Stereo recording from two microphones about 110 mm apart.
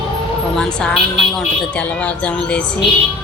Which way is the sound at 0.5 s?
5° left (ahead or behind).